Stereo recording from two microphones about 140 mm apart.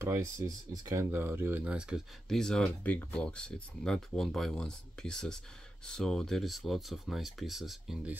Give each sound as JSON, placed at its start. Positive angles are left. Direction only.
{"t": 0.0, "sound": "speech", "side_deg": -20}
{"t": 2.2, "sound": "speech", "side_deg": 5}